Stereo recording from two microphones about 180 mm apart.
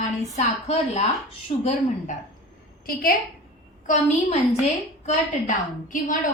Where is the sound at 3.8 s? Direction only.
40° left (ahead or behind).